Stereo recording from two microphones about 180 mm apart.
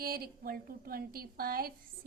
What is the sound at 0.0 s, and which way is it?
A woman's voice, 55° right (ahead or behind).